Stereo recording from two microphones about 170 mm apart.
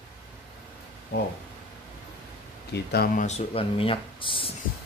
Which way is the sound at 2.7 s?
70° left (ahead or behind).